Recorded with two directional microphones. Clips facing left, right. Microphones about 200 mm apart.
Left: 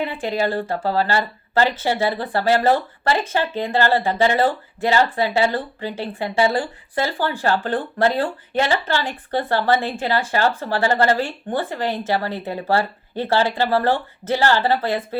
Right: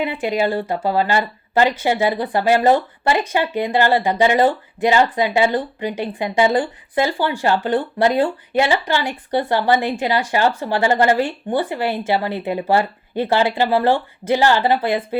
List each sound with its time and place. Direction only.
0.0 s speech: 15° right (ahead or behind)